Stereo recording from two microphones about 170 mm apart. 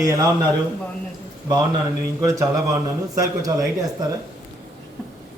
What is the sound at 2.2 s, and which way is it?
Speech, 15° right (ahead or behind).